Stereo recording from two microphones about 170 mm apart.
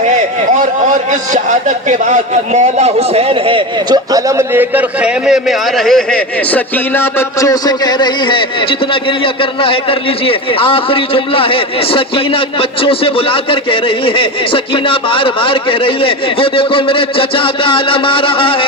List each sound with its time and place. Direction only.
0.9 s a man's voice: 45° right (ahead or behind); by 18.6 s 30° left (ahead or behind)